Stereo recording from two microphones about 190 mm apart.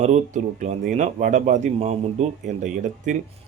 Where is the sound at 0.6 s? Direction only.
40° right (ahead or behind).